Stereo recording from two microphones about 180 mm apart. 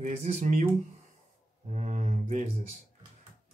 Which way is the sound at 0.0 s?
40° right (ahead or behind).